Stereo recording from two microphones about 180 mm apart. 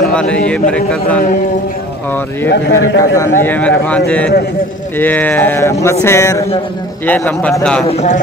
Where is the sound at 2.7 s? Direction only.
15° left (ahead or behind).